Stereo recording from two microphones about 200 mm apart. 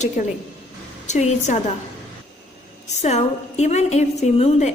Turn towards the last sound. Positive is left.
turn(degrees=30)  # may be behind; listen again after turning